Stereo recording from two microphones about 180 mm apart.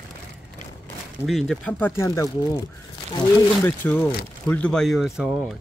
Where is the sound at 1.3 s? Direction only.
Centre (ahead or behind).